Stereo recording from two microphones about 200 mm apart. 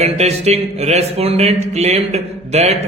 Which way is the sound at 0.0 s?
30° right (ahead or behind).